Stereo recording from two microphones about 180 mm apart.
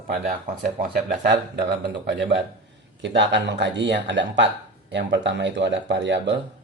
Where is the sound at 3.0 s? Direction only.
85° right.